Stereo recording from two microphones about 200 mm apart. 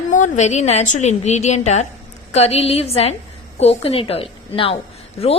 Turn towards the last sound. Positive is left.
turn(degrees=30)  # may be behind; listen again after turning